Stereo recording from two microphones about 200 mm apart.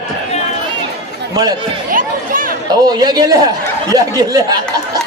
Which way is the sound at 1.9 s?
45° right (ahead or behind).